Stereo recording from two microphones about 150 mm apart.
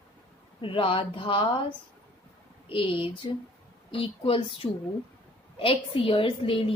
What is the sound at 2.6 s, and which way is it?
A woman's voice, 35° left (ahead or behind).